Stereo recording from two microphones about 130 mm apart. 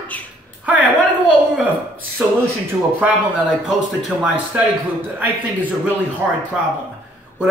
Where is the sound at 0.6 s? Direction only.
10° right (ahead or behind).